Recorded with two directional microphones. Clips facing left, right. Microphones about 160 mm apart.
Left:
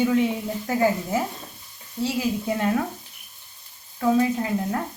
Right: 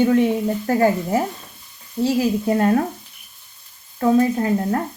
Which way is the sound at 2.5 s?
50° right (ahead or behind).